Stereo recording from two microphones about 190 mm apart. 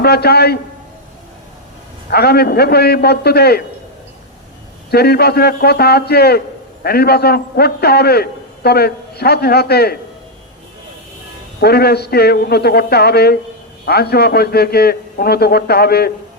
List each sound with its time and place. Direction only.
0.0 s a man's voice: 55° left (ahead or behind)
2.0 s a man's voice: 55° left (ahead or behind)
4.9 s a man's voice: 55° left (ahead or behind)
11.6 s a man's voice: 55° left (ahead or behind)